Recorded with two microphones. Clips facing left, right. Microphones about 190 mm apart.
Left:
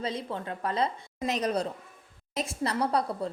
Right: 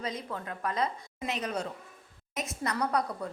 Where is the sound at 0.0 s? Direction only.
30° left (ahead or behind).